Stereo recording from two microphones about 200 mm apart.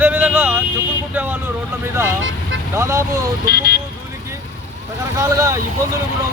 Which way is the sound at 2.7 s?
15° right (ahead or behind).